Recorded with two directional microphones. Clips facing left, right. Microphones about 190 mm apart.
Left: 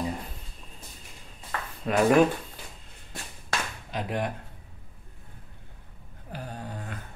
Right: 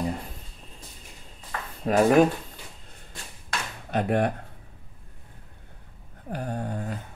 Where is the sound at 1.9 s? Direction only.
40° right (ahead or behind).